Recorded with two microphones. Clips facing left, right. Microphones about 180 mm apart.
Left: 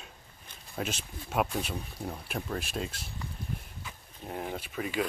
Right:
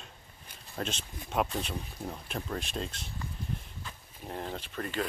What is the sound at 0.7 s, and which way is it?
Speech, 5° left (ahead or behind).